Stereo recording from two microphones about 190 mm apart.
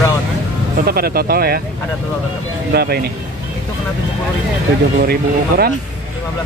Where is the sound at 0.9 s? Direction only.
55° right (ahead or behind).